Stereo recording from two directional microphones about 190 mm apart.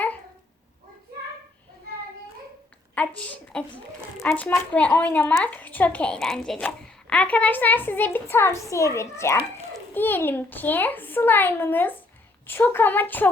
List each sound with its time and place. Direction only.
3.2 s a woman's voice: 5° left (ahead or behind)